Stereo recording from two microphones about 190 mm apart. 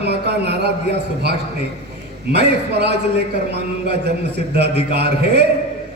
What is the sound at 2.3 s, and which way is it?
Speech, 60° right (ahead or behind).